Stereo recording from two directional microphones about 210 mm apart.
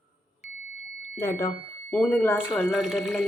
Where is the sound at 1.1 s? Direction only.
10° left (ahead or behind).